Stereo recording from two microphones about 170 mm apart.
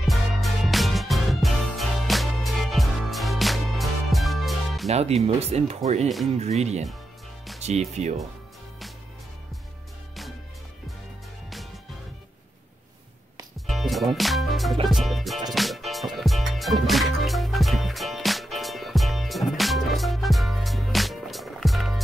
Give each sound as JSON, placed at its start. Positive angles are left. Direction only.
{"t": 0.0, "sound": "music", "side_deg": 0}
{"t": 4.8, "sound": "speech", "side_deg": -40}
{"t": 11.5, "sound": "music", "side_deg": 0}
{"t": 13.7, "sound": "music", "side_deg": 0}